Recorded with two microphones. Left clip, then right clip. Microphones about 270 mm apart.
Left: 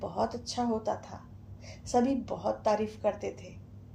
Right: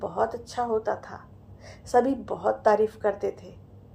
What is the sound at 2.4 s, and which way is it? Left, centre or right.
Speech, right.